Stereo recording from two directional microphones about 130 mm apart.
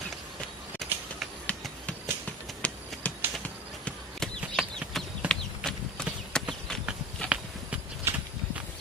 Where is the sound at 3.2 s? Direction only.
15° right (ahead or behind).